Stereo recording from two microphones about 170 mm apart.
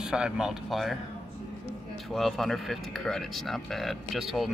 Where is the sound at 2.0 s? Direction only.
Centre (ahead or behind).